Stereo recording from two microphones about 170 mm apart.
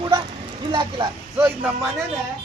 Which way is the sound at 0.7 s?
25° right (ahead or behind).